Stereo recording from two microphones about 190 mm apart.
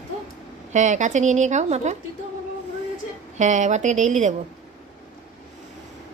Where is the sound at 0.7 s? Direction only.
40° right (ahead or behind).